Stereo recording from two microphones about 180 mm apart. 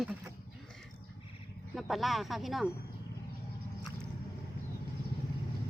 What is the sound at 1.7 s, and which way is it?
Speech, centre (ahead or behind).